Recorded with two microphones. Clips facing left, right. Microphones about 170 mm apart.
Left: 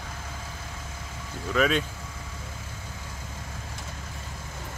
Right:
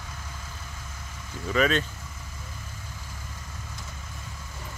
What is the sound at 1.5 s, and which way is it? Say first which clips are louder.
Speech: even; 5° left (ahead or behind).